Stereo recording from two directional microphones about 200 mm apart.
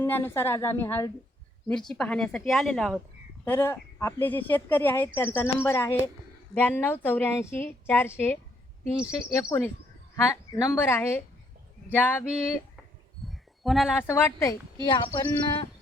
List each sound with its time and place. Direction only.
0.0 s a woman's voice: 10° left (ahead or behind)
3.4 s speech: 10° left (ahead or behind)
9.5 s speech: 10° left (ahead or behind)
13.2 s a sound: centre (ahead or behind)
14.1 s speech: 15° left (ahead or behind)